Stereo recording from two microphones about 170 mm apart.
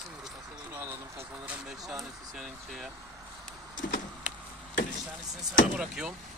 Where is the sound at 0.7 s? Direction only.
15° right (ahead or behind).